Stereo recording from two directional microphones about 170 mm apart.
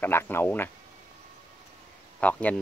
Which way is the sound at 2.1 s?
10° left (ahead or behind).